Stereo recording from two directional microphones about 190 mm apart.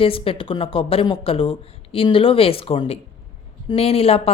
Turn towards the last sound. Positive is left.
turn(degrees=30)  # may be behind; listen again after turning